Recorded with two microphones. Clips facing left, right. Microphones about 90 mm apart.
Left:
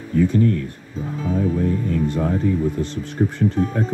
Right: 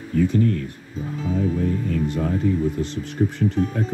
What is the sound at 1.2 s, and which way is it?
Speech, 40° left (ahead or behind).